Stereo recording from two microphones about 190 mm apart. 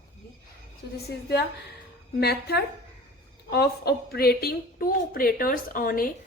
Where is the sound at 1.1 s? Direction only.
60° left (ahead or behind).